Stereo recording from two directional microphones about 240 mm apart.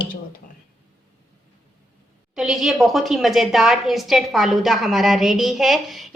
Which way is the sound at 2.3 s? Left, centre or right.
Centre.